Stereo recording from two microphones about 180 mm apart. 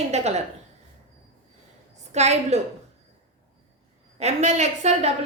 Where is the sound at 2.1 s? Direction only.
40° right (ahead or behind).